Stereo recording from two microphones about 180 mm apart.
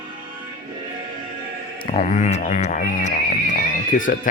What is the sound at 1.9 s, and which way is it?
Speech, 40° left (ahead or behind).